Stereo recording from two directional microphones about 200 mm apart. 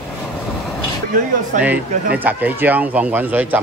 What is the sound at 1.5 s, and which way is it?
Speech, 40° right (ahead or behind).